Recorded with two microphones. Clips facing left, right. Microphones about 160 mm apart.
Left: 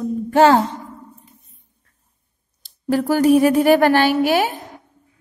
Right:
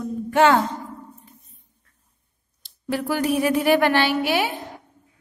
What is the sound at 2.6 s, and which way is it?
A woman's voice, 40° left (ahead or behind).